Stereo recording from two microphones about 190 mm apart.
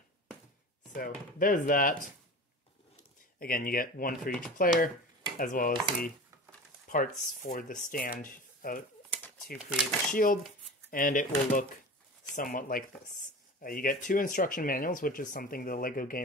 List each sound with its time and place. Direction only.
0.9 s speech: 45° left (ahead or behind)
3.3 s speech: 50° left (ahead or behind)
9.1 s shuffling cards: 10° left (ahead or behind)
10.1 s speech: 50° left (ahead or behind)